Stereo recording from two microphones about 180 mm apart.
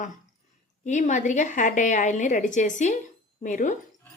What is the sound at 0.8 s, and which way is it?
A woman's voice, 40° left (ahead or behind).